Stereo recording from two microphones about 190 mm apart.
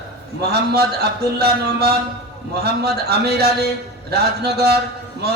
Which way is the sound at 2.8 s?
55° right (ahead or behind).